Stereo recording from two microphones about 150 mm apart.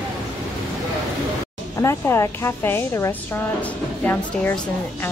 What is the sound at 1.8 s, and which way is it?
A woman's voice, 20° left (ahead or behind).